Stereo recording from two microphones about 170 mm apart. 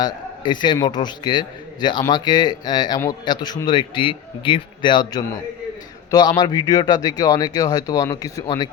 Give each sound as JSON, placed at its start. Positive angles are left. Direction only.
{"t": 0.0, "sound": "a man's voice", "side_deg": 25}